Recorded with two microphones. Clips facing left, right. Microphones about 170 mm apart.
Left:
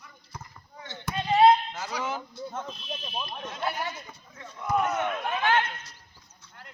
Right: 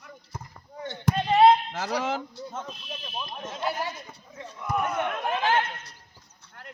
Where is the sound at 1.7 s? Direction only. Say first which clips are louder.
Right 4 dB; 80° right.